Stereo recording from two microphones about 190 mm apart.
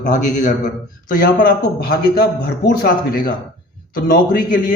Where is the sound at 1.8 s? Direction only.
55° left (ahead or behind).